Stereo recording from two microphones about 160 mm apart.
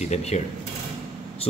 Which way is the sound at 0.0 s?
45° left (ahead or behind).